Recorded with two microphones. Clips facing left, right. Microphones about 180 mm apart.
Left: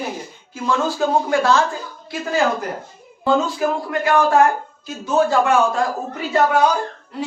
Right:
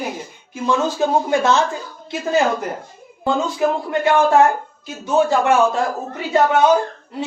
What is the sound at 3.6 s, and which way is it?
A woman's voice, 25° right (ahead or behind).